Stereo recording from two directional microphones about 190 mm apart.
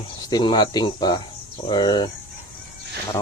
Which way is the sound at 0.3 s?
20° left (ahead or behind).